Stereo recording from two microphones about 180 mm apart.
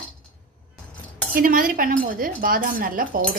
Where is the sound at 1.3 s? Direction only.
50° right (ahead or behind).